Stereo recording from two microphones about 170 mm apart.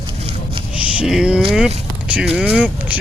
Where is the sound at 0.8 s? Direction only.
5° right (ahead or behind).